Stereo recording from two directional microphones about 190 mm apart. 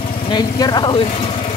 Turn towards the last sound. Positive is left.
turn(degrees=20)  # may be behind; listen again after turning